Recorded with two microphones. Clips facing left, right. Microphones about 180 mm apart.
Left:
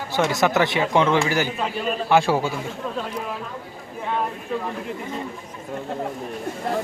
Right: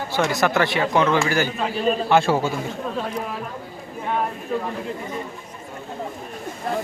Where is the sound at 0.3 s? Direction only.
20° left (ahead or behind).